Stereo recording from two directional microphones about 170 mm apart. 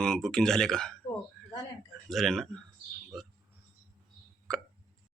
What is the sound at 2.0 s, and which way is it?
Speech, centre (ahead or behind).